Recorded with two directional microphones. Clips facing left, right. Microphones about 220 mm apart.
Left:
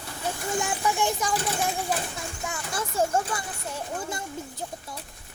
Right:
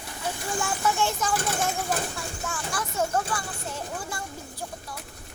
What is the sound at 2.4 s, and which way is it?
Speech, 25° left (ahead or behind).